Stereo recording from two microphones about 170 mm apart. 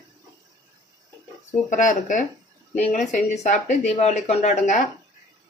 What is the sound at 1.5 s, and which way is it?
Speech, 50° left (ahead or behind).